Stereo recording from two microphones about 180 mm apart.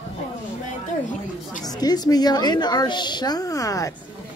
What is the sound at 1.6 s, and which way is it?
A woman's voice, 20° left (ahead or behind).